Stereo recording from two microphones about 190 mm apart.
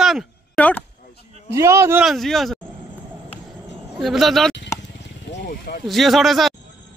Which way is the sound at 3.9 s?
Centre (ahead or behind).